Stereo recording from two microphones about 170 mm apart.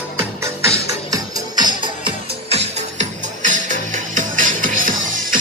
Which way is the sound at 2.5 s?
40° right (ahead or behind).